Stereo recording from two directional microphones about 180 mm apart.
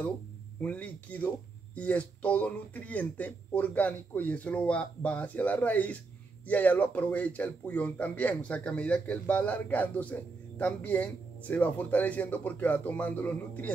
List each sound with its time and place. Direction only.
0.6 s speech: 10° left (ahead or behind)